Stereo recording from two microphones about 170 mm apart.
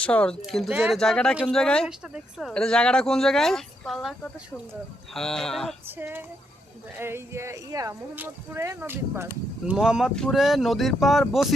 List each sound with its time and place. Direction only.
0.0 s speech: 10° left (ahead or behind); by 0.9 s 10° right (ahead or behind)
0.9 s speech: 5° left (ahead or behind)
6.0 s speech: 10° right (ahead or behind)